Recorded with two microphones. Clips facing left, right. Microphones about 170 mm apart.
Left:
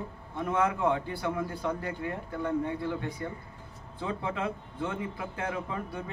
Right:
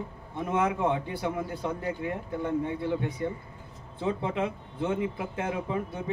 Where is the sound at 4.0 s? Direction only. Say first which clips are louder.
Right 4 dB; 20° right (ahead or behind).